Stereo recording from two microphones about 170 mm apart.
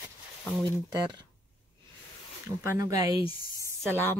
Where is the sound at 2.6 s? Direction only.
20° right (ahead or behind).